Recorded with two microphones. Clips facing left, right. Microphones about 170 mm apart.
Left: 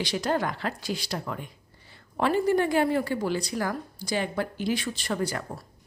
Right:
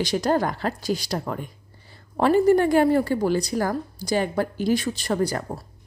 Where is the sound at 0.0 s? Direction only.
40° right (ahead or behind).